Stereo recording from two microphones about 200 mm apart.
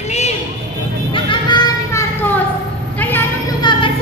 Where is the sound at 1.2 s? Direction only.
25° left (ahead or behind).